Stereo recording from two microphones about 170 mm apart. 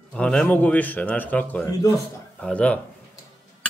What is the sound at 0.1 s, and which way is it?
A man's voice, 5° left (ahead or behind).